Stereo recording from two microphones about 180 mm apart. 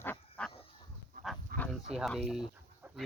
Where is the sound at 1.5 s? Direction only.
55° right (ahead or behind).